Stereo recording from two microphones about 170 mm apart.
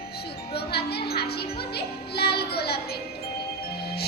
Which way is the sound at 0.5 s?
70° left (ahead or behind).